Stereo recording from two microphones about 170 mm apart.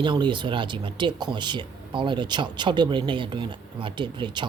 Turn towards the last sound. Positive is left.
turn(degrees=-30)  # may be behind; listen again after turning